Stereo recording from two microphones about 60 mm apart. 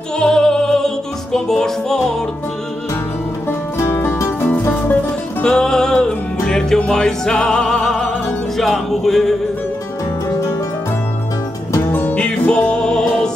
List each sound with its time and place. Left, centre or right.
0.2 s music: centre
3.7 s music: left
4.0 s music: left
5.4 s music: centre
11.9 s music: left